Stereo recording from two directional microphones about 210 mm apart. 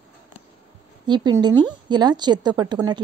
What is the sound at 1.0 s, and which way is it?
Speech, 20° right (ahead or behind).